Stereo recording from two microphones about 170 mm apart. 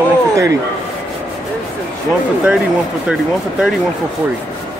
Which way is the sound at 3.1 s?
5° right (ahead or behind).